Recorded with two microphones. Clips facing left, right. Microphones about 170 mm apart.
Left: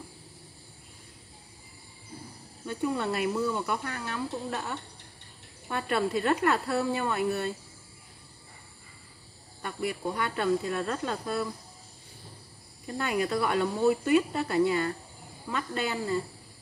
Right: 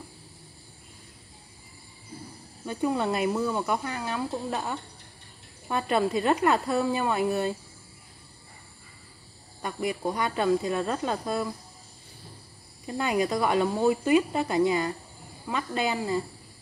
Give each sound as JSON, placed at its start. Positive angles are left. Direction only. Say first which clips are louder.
{"t": 2.6, "sound": "speech", "louder": "right 3 dB", "side_deg": -20}
{"t": 9.6, "sound": "speech", "louder": "right 3 dB", "side_deg": -20}
{"t": 12.8, "sound": "speech", "louder": "right 3 dB", "side_deg": -20}